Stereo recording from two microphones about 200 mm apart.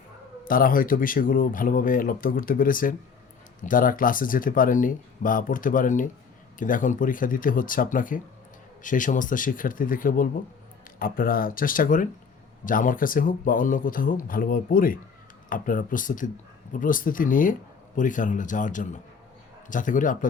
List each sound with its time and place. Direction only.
0.4 s speech: 45° left (ahead or behind)